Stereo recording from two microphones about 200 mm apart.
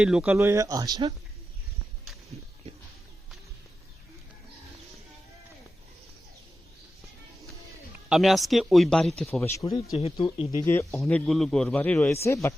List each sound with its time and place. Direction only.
0.0 s speech: 5° right (ahead or behind)
0.3 s speech: 15° right (ahead or behind)
8.1 s speech: centre (ahead or behind)
9.4 s speech: 15° left (ahead or behind)
10.0 s speech: 30° left (ahead or behind)
10.6 s speech: 10° left (ahead or behind)
11.0 s speech: centre (ahead or behind)